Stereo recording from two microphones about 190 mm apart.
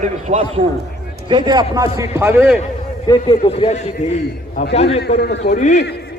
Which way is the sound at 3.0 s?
30° left (ahead or behind).